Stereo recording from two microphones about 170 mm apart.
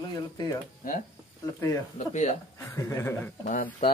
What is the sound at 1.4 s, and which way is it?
Speech, 20° left (ahead or behind).